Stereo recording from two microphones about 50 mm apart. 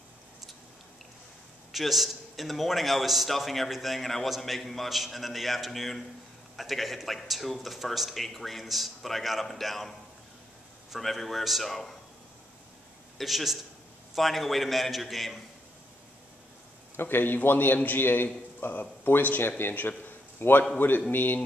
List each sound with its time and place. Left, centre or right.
1.7 s a man's voice: centre
11.0 s a man's voice: centre
13.2 s a man's voice: centre
16.9 s a man's voice: left